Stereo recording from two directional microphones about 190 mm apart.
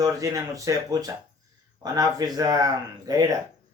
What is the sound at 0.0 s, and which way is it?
Speech, 15° right (ahead or behind).